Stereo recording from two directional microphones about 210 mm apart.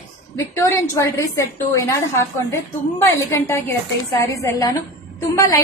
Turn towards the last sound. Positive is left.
turn(degrees=15)  # may be behind; listen again after turning